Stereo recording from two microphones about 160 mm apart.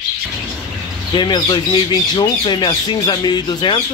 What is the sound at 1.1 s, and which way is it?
Speech, 30° left (ahead or behind).